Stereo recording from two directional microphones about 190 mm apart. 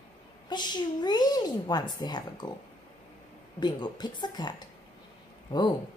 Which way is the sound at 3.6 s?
20° left (ahead or behind).